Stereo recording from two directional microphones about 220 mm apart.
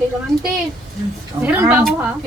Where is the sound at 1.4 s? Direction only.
5° right (ahead or behind).